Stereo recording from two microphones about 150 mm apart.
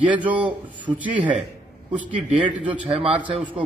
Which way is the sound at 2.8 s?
40° right (ahead or behind).